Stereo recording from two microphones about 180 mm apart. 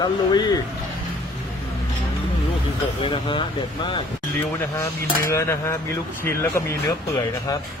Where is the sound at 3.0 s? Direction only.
30° left (ahead or behind).